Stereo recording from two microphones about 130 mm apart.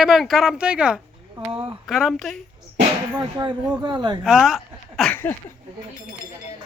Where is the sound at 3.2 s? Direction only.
30° right (ahead or behind).